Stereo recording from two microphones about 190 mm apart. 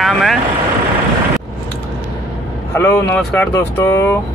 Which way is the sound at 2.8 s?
15° left (ahead or behind).